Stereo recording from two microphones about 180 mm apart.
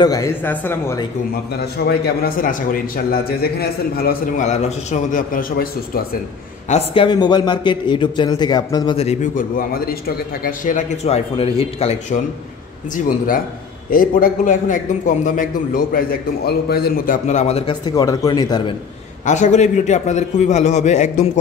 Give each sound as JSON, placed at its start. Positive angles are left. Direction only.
{"t": 0.0, "sound": "speech", "side_deg": 20}
{"t": 1.6, "sound": "a man's voice", "side_deg": 60}
{"t": 4.5, "sound": "a man's voice", "side_deg": 40}
{"t": 6.7, "sound": "a man's voice", "side_deg": 30}
{"t": 13.8, "sound": "a man's voice", "side_deg": 50}
{"t": 17.8, "sound": "speech", "side_deg": 20}
{"t": 19.2, "sound": "a man's voice", "side_deg": 40}